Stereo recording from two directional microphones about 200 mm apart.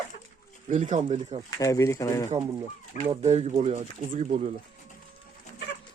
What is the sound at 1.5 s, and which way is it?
Speech, 15° left (ahead or behind).